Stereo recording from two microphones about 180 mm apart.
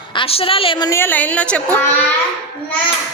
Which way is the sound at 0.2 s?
30° left (ahead or behind).